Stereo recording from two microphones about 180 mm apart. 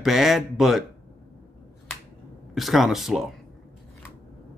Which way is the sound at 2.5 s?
Centre (ahead or behind).